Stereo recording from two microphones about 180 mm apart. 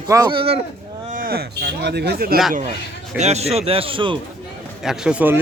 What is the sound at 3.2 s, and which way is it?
Speech, 35° right (ahead or behind).